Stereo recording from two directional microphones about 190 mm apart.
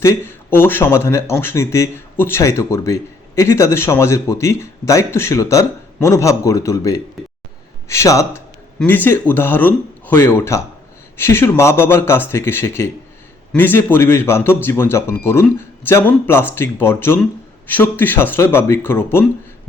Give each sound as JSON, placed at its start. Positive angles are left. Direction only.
{"t": 0.0, "sound": "speech", "side_deg": 15}